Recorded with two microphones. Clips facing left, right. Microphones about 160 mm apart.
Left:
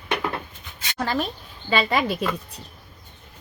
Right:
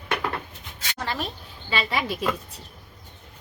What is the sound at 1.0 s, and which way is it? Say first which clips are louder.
A woman's voice: left 5 dB; 45° left (ahead or behind).